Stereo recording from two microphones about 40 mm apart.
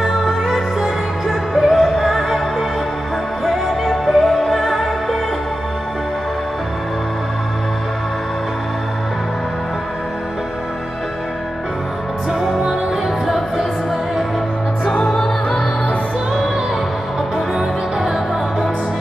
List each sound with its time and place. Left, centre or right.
0.0 s music: centre
3.4 s music: centre
15.0 s music: centre
17.6 s music: centre